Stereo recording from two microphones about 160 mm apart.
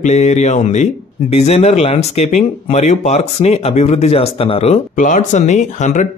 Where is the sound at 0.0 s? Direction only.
45° left (ahead or behind).